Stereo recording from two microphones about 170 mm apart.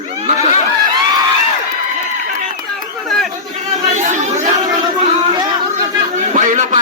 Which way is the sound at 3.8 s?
45° right (ahead or behind).